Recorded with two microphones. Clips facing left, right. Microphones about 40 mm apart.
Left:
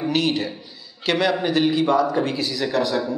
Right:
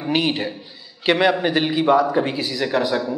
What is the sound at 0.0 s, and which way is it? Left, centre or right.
A man's voice, centre.